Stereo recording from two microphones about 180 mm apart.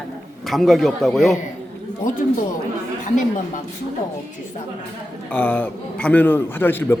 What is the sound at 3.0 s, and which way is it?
Speech, 45° left (ahead or behind).